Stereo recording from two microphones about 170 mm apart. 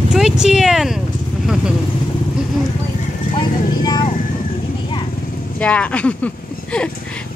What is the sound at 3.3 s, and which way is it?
Clip-clop, 25° left (ahead or behind).